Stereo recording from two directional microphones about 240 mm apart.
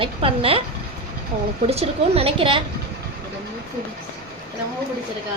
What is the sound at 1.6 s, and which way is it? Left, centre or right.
A woman's voice, right.